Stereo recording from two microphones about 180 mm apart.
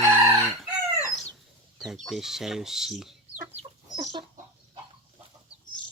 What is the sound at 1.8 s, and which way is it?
Speech, centre (ahead or behind).